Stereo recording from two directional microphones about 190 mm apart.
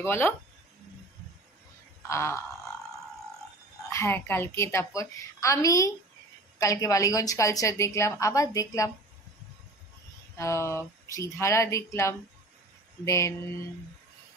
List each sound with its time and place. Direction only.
0.0 s a woman's voice: 10° left (ahead or behind)
2.0 s a woman's voice: 15° left (ahead or behind)
3.9 s a woman's voice: 15° left (ahead or behind)
10.3 s a woman's voice: 15° left (ahead or behind)